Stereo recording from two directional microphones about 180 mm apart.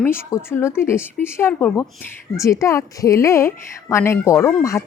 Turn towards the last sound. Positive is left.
turn(degrees=15)  # may be behind; listen again after turning